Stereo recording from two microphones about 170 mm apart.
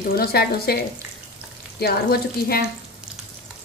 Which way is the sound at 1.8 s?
65° left (ahead or behind).